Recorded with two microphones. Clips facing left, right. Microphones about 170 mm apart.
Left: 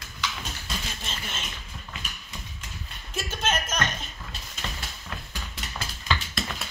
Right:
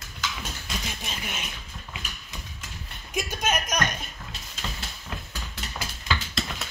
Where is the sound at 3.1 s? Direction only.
15° right (ahead or behind).